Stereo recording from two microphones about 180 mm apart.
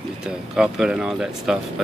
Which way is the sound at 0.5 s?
5° right (ahead or behind).